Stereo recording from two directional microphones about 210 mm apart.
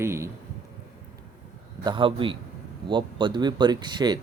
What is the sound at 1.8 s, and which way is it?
Speech, 25° right (ahead or behind).